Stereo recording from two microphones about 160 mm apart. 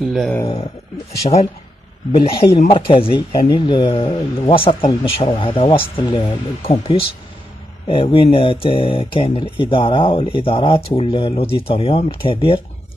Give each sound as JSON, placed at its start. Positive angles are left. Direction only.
{"t": 0.0, "sound": "speech", "side_deg": 0}
{"t": 1.2, "sound": "speech", "side_deg": 40}